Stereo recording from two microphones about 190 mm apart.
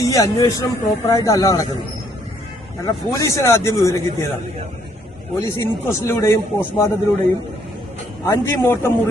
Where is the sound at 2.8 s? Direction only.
20° left (ahead or behind).